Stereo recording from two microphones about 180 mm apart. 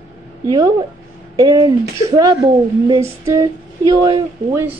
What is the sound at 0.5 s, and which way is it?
A woman's voice, 20° right (ahead or behind).